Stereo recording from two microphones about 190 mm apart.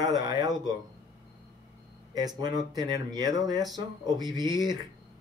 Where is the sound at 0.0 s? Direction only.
20° right (ahead or behind).